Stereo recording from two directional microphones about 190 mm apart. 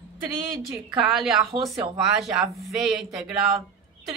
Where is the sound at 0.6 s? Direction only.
Centre (ahead or behind).